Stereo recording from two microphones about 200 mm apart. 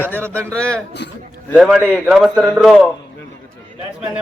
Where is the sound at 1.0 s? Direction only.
60° left (ahead or behind).